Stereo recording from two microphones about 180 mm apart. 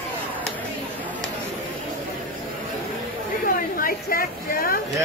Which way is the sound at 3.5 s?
55° left (ahead or behind).